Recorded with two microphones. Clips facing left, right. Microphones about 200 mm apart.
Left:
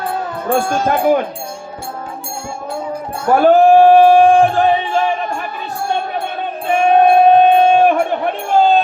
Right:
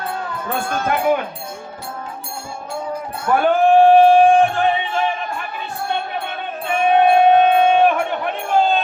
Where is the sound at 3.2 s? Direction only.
35° left (ahead or behind).